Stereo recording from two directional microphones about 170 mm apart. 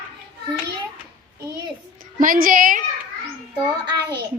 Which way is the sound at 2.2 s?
55° right (ahead or behind).